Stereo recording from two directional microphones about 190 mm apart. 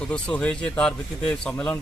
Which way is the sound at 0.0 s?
5° left (ahead or behind).